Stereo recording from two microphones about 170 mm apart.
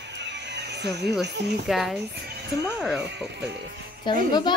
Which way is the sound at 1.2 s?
80° right.